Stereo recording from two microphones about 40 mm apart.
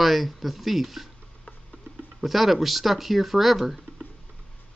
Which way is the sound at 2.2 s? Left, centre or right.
Centre.